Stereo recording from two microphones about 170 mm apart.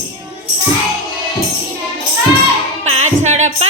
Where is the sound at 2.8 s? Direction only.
40° right (ahead or behind).